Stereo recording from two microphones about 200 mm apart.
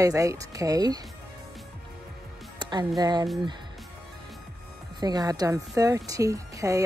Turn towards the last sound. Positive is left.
turn(degrees=-15)  # may be behind; listen again after turning